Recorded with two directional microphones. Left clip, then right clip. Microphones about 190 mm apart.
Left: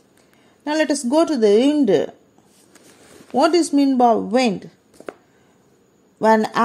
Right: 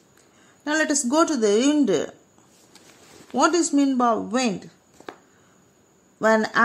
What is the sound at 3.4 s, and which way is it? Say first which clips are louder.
Speech: left 4 dB; 15° left (ahead or behind).